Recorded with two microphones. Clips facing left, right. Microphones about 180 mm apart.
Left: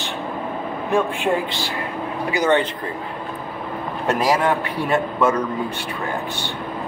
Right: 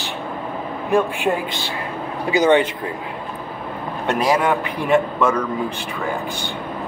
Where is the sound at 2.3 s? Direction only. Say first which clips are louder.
Right 4 dB; 20° right (ahead or behind).